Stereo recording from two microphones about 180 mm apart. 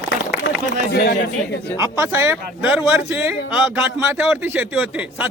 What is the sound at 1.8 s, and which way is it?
A man's voice, 15° right (ahead or behind).